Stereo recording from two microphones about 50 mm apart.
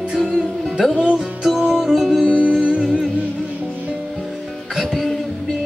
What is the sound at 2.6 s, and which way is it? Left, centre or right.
Music, centre.